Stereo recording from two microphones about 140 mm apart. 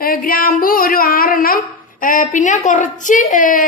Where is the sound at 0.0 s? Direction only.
90° left.